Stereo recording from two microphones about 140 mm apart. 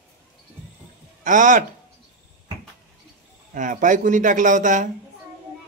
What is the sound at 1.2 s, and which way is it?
Speech, 70° right (ahead or behind).